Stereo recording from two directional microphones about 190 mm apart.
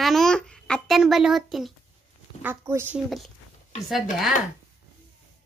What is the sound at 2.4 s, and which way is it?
Speech, 10° right (ahead or behind).